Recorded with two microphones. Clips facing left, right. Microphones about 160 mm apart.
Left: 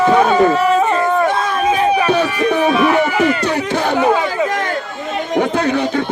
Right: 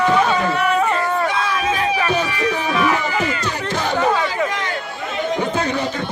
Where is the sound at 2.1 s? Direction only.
60° left (ahead or behind).